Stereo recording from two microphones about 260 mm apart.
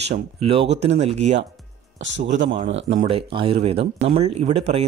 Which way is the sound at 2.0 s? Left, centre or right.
Right.